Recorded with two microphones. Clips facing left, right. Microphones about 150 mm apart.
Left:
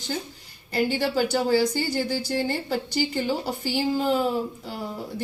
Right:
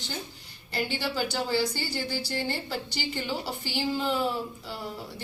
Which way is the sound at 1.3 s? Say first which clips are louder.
Left 7 dB; 45° left (ahead or behind).